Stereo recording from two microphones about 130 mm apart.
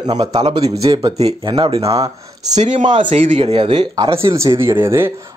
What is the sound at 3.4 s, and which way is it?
Speech, 45° right (ahead or behind).